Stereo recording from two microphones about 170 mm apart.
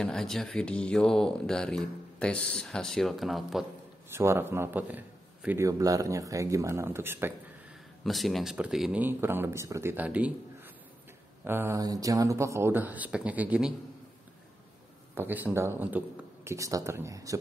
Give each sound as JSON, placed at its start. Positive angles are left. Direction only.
{"t": 0.0, "sound": "speech", "side_deg": 5}
{"t": 4.1, "sound": "a man's voice", "side_deg": -15}
{"t": 8.0, "sound": "a man's voice", "side_deg": 0}
{"t": 11.4, "sound": "a man's voice", "side_deg": -15}
{"t": 15.1, "sound": "a man's voice", "side_deg": -10}